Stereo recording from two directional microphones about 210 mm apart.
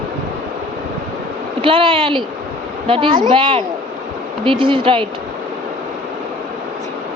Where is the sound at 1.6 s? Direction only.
25° right (ahead or behind).